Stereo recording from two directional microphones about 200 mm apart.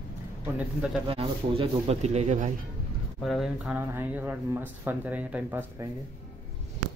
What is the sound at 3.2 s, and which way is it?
Speech, centre (ahead or behind).